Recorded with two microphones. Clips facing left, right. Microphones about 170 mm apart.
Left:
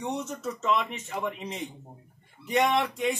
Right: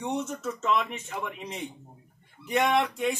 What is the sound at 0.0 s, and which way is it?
A man's voice, centre (ahead or behind).